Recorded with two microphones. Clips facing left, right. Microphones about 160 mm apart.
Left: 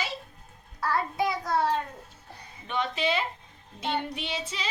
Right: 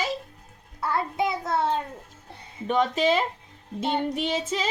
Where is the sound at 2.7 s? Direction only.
45° right (ahead or behind).